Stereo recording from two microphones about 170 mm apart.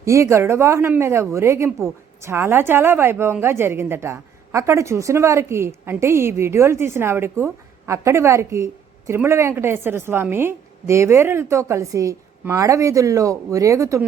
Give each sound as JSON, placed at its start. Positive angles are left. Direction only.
{"t": 0.0, "sound": "a woman's voice", "side_deg": -15}